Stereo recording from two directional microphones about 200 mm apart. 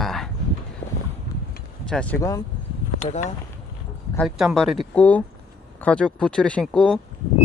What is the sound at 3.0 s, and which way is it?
Speech, 35° left (ahead or behind).